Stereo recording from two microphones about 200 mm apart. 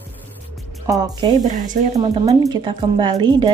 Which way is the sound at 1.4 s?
40° right (ahead or behind).